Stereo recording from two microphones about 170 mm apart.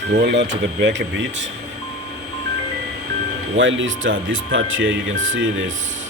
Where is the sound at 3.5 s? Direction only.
90° right.